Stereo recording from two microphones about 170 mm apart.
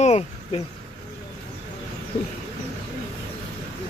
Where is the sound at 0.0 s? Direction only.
40° left (ahead or behind).